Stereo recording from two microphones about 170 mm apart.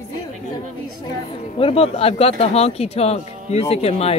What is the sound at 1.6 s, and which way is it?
Speech, 35° left (ahead or behind).